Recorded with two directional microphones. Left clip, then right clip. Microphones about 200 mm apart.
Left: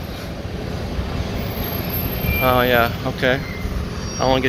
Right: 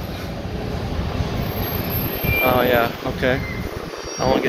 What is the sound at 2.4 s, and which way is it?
Speech, centre (ahead or behind).